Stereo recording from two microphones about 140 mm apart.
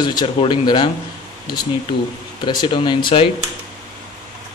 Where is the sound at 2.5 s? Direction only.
30° left (ahead or behind).